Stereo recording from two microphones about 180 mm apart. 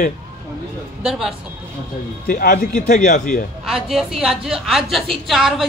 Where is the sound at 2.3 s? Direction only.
45° left (ahead or behind).